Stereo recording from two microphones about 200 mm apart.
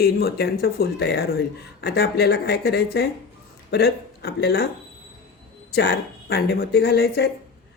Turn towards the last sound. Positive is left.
turn(degrees=55)  # may be behind; listen again after turning